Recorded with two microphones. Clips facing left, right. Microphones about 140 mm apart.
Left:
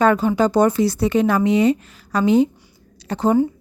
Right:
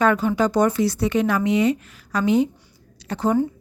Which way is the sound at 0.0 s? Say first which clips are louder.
Left 3 dB; 30° left (ahead or behind).